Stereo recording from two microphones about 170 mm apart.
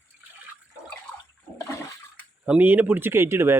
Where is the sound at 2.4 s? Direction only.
10° right (ahead or behind).